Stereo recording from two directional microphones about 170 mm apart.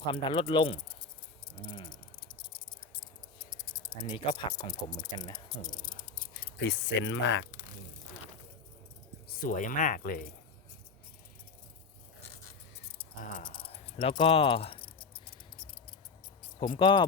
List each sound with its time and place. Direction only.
0.0 s speech: 30° left (ahead or behind)
1.6 s a sound: 30° left (ahead or behind)
2.9 s a sound: 25° left (ahead or behind)
4.4 s speech: 25° left (ahead or behind)
6.6 s speech: 90° left
9.4 s speech: 50° left (ahead or behind)
13.5 s keys jangling: 35° left (ahead or behind)
16.6 s speech: 30° left (ahead or behind)